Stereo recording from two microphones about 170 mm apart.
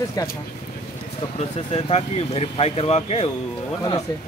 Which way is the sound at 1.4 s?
35° left (ahead or behind).